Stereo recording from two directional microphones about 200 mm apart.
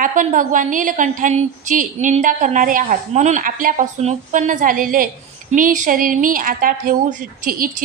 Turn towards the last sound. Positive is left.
turn(degrees=-45)  # may be behind; listen again after turning